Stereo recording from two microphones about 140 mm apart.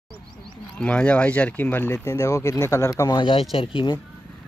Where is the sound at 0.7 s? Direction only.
10° left (ahead or behind); by 4.0 s 35° left (ahead or behind).